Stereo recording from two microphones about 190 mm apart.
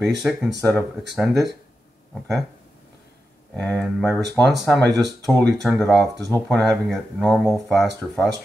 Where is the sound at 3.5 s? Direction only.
5° left (ahead or behind).